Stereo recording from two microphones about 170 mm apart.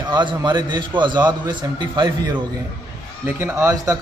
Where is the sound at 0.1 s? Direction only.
25° right (ahead or behind).